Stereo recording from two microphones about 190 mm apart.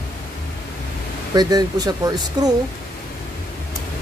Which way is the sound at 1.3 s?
20° right (ahead or behind).